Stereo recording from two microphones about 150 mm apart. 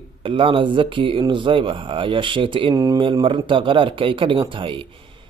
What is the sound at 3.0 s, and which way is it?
Speech, 35° right (ahead or behind).